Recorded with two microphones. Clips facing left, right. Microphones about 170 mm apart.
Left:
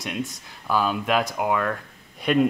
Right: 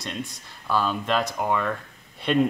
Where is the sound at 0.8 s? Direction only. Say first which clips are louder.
Left 2 dB; 10° left (ahead or behind).